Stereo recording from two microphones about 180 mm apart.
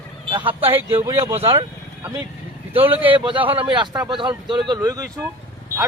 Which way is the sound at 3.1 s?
30° right (ahead or behind).